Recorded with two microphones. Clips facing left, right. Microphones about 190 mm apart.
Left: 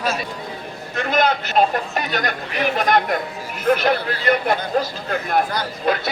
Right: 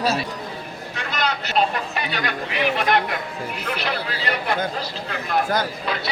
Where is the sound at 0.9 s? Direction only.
50° left (ahead or behind).